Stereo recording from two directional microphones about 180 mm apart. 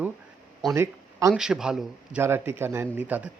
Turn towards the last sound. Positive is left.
turn(degrees=-10)  # may be behind; listen again after turning